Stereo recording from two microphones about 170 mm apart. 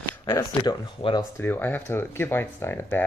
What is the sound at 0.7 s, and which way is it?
Speech, 25° left (ahead or behind).